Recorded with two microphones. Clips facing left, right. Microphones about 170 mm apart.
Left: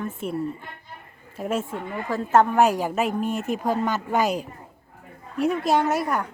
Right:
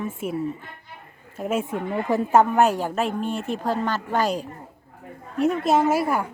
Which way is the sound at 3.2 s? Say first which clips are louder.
Left 1 dB; 45° left (ahead or behind).